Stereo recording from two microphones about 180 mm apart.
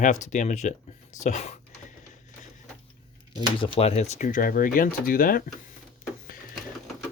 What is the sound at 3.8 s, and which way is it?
Speech, 35° left (ahead or behind).